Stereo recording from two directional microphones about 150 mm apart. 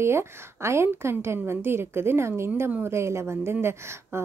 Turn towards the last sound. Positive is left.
turn(degrees=-15)  # may be behind; listen again after turning